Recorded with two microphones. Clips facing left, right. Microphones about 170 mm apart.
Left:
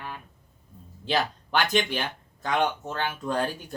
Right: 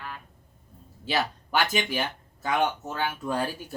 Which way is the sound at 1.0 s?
5° right (ahead or behind).